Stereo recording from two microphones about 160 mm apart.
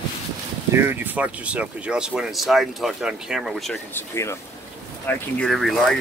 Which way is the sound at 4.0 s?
15° left (ahead or behind).